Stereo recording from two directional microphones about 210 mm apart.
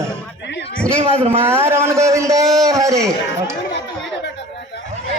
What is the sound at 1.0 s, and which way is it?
Speech, 25° right (ahead or behind).